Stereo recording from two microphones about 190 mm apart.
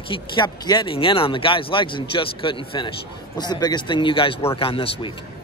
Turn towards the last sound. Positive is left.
turn(degrees=30)  # may be behind; listen again after turning